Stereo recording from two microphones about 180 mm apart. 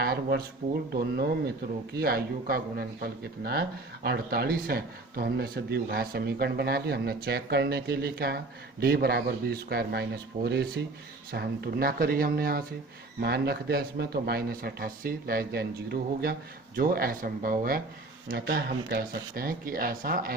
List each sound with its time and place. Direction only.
0.0 s speech: 60° right (ahead or behind)
2.0 s speech: 55° right (ahead or behind)